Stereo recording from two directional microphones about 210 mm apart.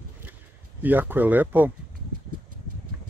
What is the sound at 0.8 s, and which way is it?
Speech, 10° right (ahead or behind).